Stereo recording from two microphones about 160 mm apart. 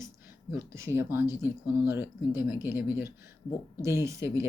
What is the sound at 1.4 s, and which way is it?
Speech, 15° right (ahead or behind).